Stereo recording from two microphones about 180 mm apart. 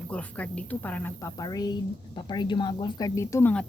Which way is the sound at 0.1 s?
5° left (ahead or behind).